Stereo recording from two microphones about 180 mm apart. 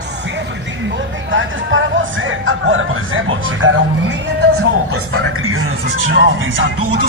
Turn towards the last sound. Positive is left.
turn(degrees=-90)